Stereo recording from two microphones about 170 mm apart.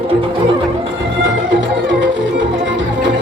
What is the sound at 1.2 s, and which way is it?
Music, 90° right.